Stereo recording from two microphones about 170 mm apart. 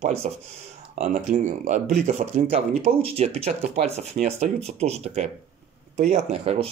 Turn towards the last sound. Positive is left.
turn(degrees=-40)  # may be behind; listen again after turning